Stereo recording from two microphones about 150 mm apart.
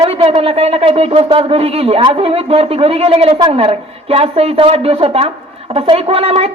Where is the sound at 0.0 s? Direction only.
35° right (ahead or behind).